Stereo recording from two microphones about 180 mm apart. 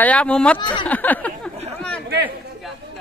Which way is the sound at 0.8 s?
10° left (ahead or behind).